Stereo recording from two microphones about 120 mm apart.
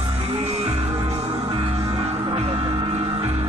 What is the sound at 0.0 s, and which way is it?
Music, 45° right (ahead or behind).